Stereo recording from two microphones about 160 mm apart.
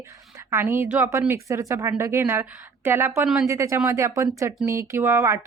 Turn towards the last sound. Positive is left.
turn(degrees=-15)  # may be behind; listen again after turning